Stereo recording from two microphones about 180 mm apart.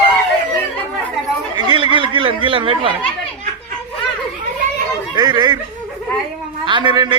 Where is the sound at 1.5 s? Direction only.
25° right (ahead or behind).